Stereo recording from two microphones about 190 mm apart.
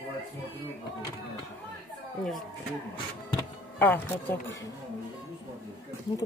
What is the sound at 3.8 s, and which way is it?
Speech, 10° left (ahead or behind).